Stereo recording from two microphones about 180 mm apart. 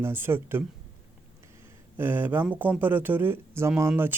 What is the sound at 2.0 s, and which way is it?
Speech, 10° right (ahead or behind).